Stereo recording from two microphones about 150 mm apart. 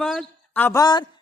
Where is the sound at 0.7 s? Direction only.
25° left (ahead or behind).